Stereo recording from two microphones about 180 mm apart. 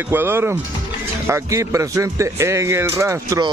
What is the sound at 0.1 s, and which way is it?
Speech, 10° right (ahead or behind).